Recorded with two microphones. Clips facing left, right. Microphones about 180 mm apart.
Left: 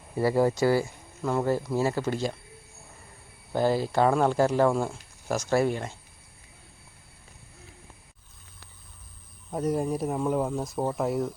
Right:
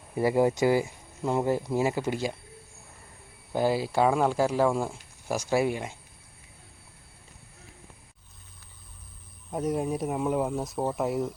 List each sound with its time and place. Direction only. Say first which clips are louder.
0.2 s speech: even; 15° right (ahead or behind)
3.5 s speech: left 1 dB; 10° right (ahead or behind)
9.5 s speech: left 1 dB; centre (ahead or behind)